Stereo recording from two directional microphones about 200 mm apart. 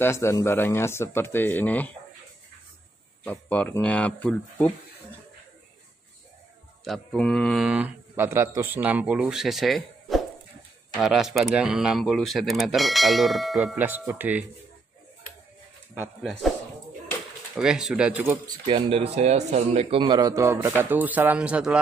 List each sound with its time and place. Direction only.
0.0 s speech: 15° left (ahead or behind)
3.3 s speech: 5° left (ahead or behind)
6.8 s a man's voice: centre (ahead or behind)
16.2 s a man's voice: centre (ahead or behind)
17.6 s a man's voice: centre (ahead or behind)
18.7 s speech: 30° right (ahead or behind); by 21.7 s 5° right (ahead or behind)